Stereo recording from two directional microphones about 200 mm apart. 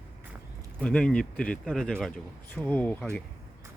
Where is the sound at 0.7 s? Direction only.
5° left (ahead or behind).